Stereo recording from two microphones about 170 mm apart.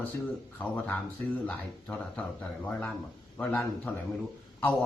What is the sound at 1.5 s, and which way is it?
Speech, 10° left (ahead or behind).